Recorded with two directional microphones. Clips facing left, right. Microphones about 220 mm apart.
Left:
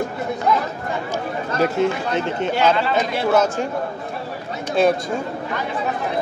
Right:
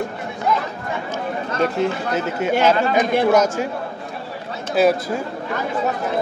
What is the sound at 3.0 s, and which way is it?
Speech, 55° right (ahead or behind).